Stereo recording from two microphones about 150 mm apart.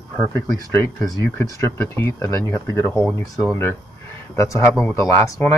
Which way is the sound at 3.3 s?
Centre (ahead or behind).